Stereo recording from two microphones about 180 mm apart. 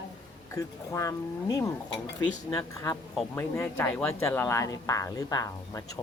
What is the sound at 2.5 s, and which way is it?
Speech, 20° left (ahead or behind).